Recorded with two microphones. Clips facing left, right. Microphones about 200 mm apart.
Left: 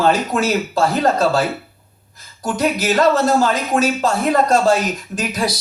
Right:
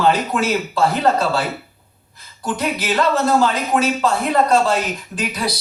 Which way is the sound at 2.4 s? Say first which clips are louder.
Left 4 dB; 45° left (ahead or behind).